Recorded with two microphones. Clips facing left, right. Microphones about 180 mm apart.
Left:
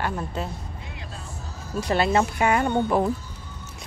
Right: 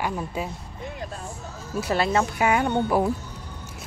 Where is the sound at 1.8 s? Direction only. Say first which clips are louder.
Left 1 dB; centre (ahead or behind).